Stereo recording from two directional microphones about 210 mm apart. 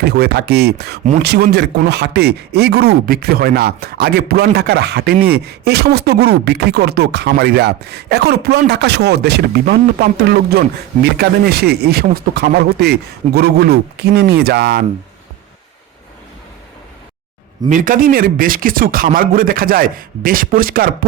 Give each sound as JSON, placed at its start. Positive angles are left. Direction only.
{"t": 0.0, "sound": "speech", "side_deg": -50}
{"t": 17.7, "sound": "speech", "side_deg": -40}